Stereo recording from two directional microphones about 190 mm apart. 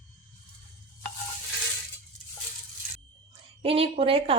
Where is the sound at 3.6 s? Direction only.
30° right (ahead or behind).